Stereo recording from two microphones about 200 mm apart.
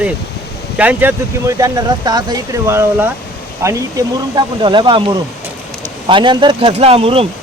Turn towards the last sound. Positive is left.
turn(degrees=-30)  # may be behind; listen again after turning